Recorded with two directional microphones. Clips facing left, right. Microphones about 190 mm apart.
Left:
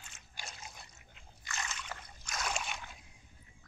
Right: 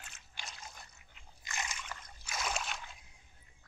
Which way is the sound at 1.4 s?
15° right (ahead or behind).